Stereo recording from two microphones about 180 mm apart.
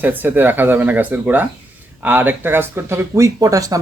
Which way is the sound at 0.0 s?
10° right (ahead or behind).